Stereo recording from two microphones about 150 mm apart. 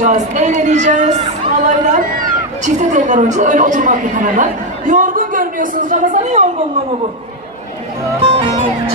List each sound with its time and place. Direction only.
0.0 s speech: 55° right (ahead or behind)
8.2 s speech: 40° right (ahead or behind)